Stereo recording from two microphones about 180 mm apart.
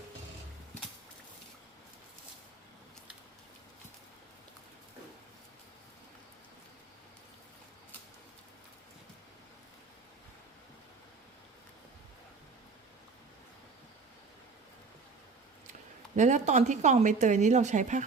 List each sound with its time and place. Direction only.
16.1 s speech: 40° right (ahead or behind)